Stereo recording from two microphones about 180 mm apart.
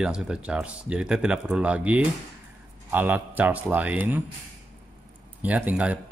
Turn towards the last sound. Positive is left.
turn(degrees=-5)  # may be behind; listen again after turning